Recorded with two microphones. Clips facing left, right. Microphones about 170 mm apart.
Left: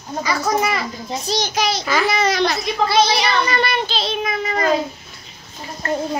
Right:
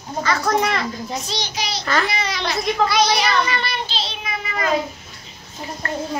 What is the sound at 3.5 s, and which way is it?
Child singing, 50° left (ahead or behind).